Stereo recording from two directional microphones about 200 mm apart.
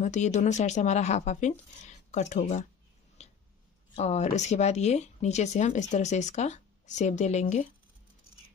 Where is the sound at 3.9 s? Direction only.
35° left (ahead or behind).